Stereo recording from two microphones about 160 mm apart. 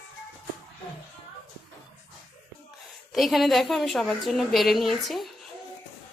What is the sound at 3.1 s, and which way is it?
A woman's voice, centre (ahead or behind).